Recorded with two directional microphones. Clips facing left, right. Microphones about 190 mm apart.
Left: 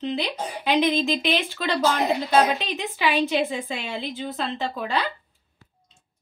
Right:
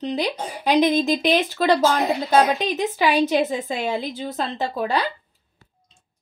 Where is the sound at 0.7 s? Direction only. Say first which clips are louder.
Right 4 dB; 40° right (ahead or behind).